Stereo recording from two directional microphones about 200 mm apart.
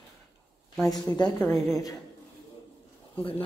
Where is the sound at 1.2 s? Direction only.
5° left (ahead or behind).